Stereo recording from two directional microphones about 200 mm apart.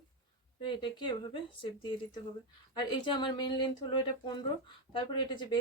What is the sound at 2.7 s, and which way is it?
Speech, 25° left (ahead or behind).